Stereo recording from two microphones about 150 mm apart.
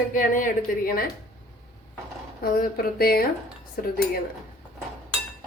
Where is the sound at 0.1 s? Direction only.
65° left (ahead or behind).